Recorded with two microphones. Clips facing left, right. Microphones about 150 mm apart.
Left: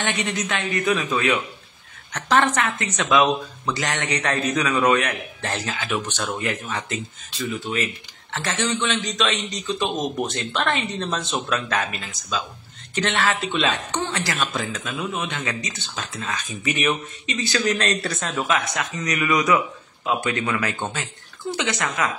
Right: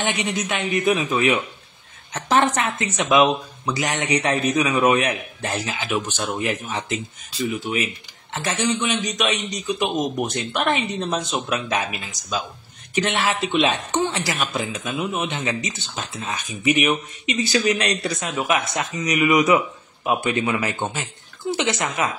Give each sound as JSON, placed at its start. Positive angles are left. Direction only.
{"t": 0.0, "sound": "speech", "side_deg": -20}
{"t": 12.9, "sound": "speech", "side_deg": -20}
{"t": 18.0, "sound": "speech", "side_deg": 0}
{"t": 18.7, "sound": "speech", "side_deg": -20}